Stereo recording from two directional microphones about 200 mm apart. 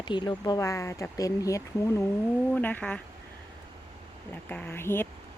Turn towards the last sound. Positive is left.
turn(degrees=10)  # may be behind; listen again after turning